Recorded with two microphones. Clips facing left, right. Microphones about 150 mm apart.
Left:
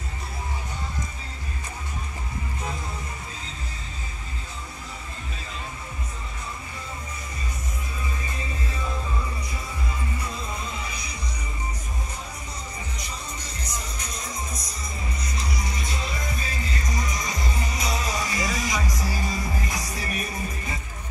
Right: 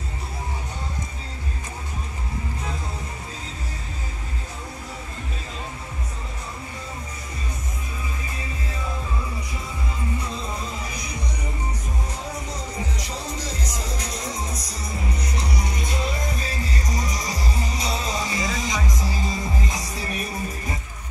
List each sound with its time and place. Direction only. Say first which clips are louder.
12.9 s music: right 5 dB; 90° right; by 15.4 s 70° right (ahead or behind)
16.9 s music: right 1 dB; 35° right (ahead or behind)